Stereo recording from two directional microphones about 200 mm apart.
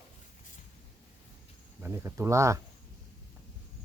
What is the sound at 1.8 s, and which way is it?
Speech, 15° right (ahead or behind).